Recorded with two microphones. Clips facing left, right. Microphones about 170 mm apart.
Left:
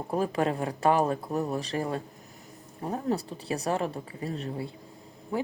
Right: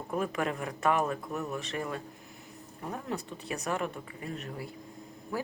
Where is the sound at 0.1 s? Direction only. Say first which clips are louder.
Left 4 dB; 30° left (ahead or behind).